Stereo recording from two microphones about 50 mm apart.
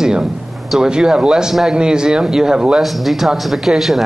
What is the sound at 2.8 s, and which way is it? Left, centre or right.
Speech, centre.